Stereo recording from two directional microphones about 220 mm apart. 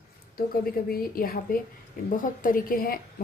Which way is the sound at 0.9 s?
40° left (ahead or behind).